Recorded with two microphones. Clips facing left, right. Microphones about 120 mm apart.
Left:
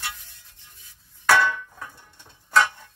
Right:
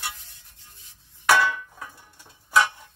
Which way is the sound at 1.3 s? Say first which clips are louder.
Left 1 dB; 5° right (ahead or behind).